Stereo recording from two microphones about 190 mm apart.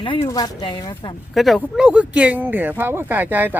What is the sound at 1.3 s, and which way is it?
Speech, centre (ahead or behind).